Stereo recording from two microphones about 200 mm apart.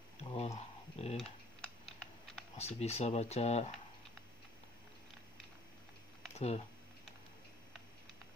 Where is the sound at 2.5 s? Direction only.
35° left (ahead or behind).